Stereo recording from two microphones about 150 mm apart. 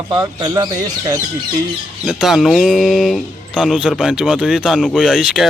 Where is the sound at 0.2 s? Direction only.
25° right (ahead or behind).